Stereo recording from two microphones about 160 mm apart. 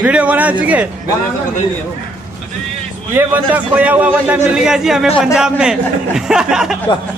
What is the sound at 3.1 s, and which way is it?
A man's voice, 10° right (ahead or behind).